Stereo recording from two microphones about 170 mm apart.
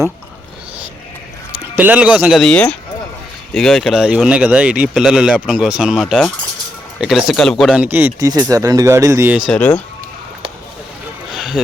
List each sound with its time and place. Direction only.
1.5 s speech: 10° right (ahead or behind)
7.9 s speech: 15° right (ahead or behind)
9.5 s speech: 10° left (ahead or behind)
11.3 s a sound: centre (ahead or behind)